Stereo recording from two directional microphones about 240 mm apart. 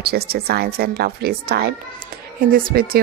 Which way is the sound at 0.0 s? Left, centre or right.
Right.